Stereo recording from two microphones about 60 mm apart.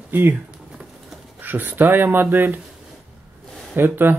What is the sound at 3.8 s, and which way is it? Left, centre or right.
Speech, right.